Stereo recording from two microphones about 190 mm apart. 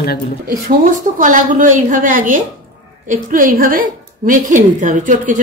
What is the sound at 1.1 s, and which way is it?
A woman's voice, 45° right (ahead or behind).